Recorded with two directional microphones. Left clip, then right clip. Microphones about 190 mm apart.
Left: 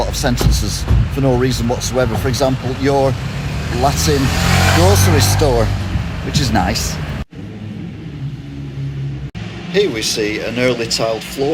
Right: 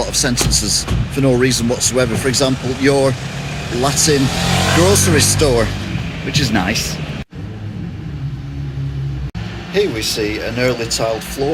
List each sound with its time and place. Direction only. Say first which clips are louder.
0.0 s speech: right 1 dB; 5° left (ahead or behind)
4.2 s speech: even; 30° right (ahead or behind)
4.6 s speech: even; 15° left (ahead or behind)
4.9 s speech: right 1 dB; 30° left (ahead or behind)
6.3 s speech: even; centre (ahead or behind)
9.7 s speech: left 1 dB; 5° right (ahead or behind)